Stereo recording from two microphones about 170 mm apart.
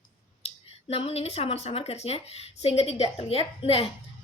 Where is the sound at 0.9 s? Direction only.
35° left (ahead or behind).